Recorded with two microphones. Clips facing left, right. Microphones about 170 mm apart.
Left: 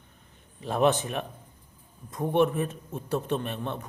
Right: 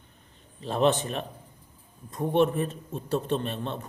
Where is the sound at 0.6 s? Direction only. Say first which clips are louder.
Even; 15° left (ahead or behind).